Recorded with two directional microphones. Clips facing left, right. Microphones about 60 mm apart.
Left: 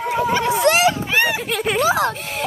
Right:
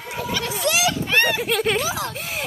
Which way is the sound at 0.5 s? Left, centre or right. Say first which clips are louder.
Left 6 dB; left.